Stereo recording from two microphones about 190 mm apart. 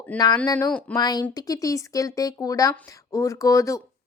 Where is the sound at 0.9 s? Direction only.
20° left (ahead or behind).